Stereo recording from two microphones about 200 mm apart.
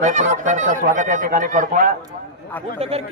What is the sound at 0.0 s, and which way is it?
A man's voice, 35° right (ahead or behind).